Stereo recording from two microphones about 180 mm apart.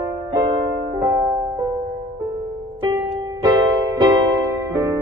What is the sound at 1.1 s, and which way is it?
Music, 15° right (ahead or behind).